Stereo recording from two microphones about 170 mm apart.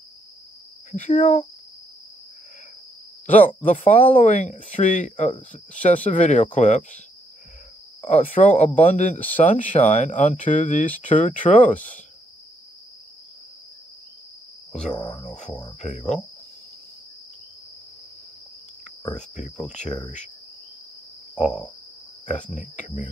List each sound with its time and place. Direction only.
0.9 s speech: 45° left (ahead or behind)
3.4 s speech: 50° left (ahead or behind)
8.0 s speech: 45° left (ahead or behind)
15.0 s speech: 25° left (ahead or behind)
15.8 s speech: 45° left (ahead or behind)
19.1 s speech: 45° left (ahead or behind)
22.2 s speech: 45° left (ahead or behind)